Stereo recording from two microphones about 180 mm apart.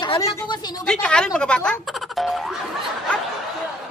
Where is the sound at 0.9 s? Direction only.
5° left (ahead or behind).